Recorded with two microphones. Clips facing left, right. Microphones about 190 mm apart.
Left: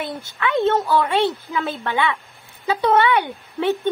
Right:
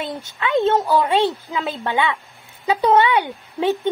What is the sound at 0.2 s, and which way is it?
A woman's voice, 15° right (ahead or behind).